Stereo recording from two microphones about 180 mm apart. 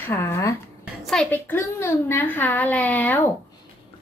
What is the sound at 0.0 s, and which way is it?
A woman's voice, 15° left (ahead or behind).